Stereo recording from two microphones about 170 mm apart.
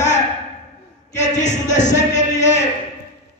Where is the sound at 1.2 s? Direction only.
45° left (ahead or behind).